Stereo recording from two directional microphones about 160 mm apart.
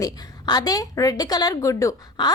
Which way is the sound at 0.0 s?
25° left (ahead or behind).